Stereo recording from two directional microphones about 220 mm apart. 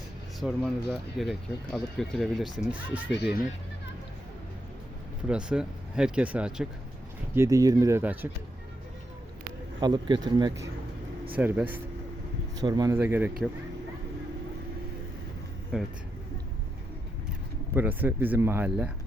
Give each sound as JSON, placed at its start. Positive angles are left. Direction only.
{"t": 0.3, "sound": "speech", "side_deg": 0}
{"t": 5.3, "sound": "speech", "side_deg": -5}
{"t": 9.8, "sound": "speech", "side_deg": -20}
{"t": 11.3, "sound": "speech", "side_deg": -5}
{"t": 12.6, "sound": "speech", "side_deg": -20}
{"t": 15.7, "sound": "speech", "side_deg": -5}
{"t": 17.7, "sound": "speech", "side_deg": -10}